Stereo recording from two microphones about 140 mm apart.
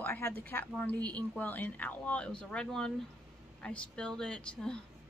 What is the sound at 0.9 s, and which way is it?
Speech, 30° right (ahead or behind).